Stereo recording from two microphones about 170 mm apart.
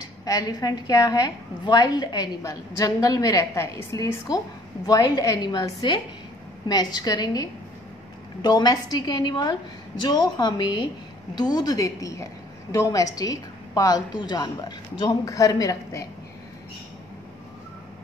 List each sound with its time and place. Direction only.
0.0 s a woman's voice: 20° left (ahead or behind)